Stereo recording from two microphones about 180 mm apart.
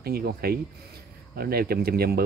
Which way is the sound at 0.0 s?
60° right (ahead or behind).